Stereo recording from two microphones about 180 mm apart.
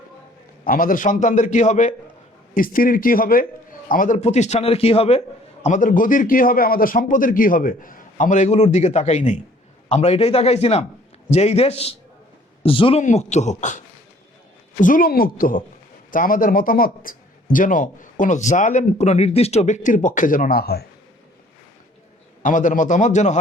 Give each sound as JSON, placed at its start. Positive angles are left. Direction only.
{"t": 0.6, "sound": "a man's voice", "side_deg": 50}
{"t": 5.6, "sound": "a man's voice", "side_deg": 45}
{"t": 13.0, "sound": "a man's voice", "side_deg": 40}
{"t": 22.4, "sound": "a man's voice", "side_deg": 45}